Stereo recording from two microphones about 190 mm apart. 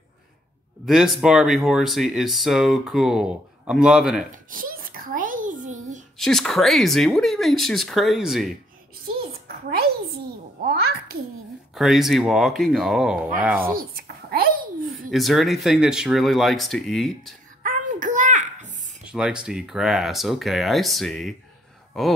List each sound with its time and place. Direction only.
0.8 s speech: centre (ahead or behind)
4.3 s a sound: 45° right (ahead or behind)
6.1 s speech: centre (ahead or behind)
10.6 s babbling: 55° right (ahead or behind)
11.7 s speech: centre (ahead or behind)
13.7 s babbling: 50° right (ahead or behind)
15.0 s speech: centre (ahead or behind)
17.6 s a sound: 45° right (ahead or behind)
19.0 s speech: 5° right (ahead or behind)